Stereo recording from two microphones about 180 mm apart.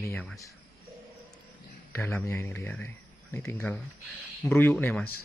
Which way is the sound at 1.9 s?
10° left (ahead or behind).